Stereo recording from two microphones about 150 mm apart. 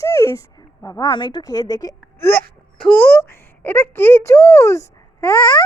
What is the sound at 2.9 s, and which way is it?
Speech, 10° left (ahead or behind).